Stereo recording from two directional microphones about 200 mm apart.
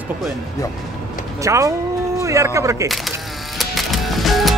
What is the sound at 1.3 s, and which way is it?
Speech, 15° right (ahead or behind).